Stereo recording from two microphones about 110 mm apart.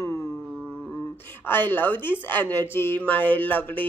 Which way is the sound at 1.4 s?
20° left (ahead or behind).